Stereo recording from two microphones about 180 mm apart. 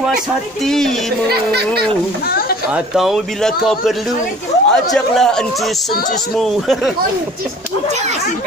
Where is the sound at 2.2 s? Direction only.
55° left (ahead or behind).